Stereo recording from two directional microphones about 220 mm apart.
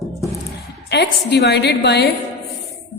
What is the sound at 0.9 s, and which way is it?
A woman's voice, 50° left (ahead or behind).